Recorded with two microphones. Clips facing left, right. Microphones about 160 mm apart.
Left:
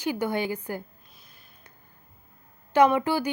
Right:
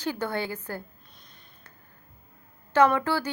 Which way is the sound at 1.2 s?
5° left (ahead or behind).